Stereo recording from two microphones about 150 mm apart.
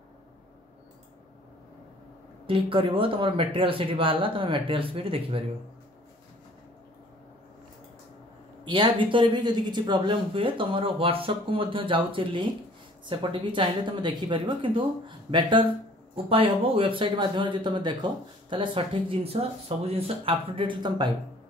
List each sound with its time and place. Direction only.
2.4 s a woman's voice: 35° right (ahead or behind)
8.6 s a woman's voice: 30° right (ahead or behind)